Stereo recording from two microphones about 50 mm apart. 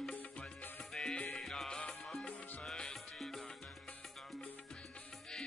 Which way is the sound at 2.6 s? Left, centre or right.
Centre.